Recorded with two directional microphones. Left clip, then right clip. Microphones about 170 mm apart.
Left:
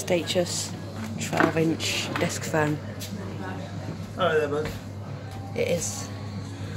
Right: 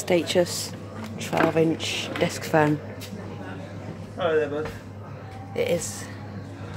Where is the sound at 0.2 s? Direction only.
40° right (ahead or behind).